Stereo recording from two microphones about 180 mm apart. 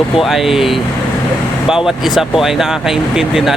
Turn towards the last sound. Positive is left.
turn(degrees=-5)  # may be behind; listen again after turning